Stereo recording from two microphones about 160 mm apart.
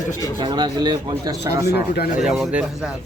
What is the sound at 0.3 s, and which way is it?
Speech, 25° right (ahead or behind).